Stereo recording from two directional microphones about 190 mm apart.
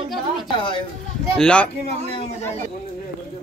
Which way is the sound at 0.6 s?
25° left (ahead or behind).